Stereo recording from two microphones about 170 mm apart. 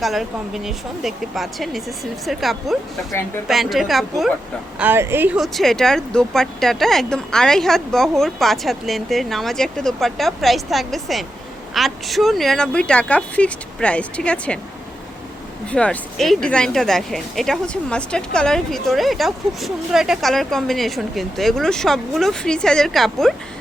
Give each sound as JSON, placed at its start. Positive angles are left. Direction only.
{"t": 0.0, "sound": "speech", "side_deg": 0}
{"t": 4.8, "sound": "speech", "side_deg": -15}
{"t": 15.7, "sound": "speech", "side_deg": 5}